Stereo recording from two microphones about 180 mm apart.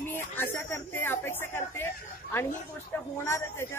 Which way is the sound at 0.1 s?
10° left (ahead or behind).